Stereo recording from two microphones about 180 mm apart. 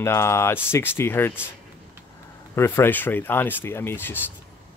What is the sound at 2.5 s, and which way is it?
Speech, 15° left (ahead or behind).